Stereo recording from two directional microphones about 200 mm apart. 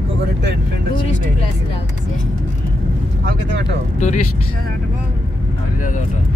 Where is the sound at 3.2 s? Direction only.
55° right (ahead or behind).